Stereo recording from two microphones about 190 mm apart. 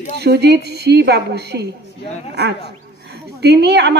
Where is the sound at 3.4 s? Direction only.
60° right (ahead or behind).